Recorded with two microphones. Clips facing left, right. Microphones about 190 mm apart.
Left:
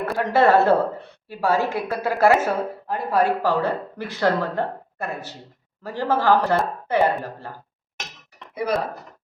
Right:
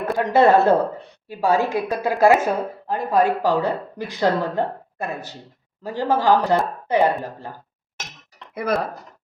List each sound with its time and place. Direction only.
0.0 s a woman's voice: 20° right (ahead or behind)